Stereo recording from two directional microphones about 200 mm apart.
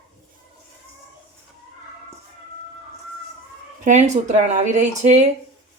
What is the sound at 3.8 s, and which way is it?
Speech, 35° right (ahead or behind).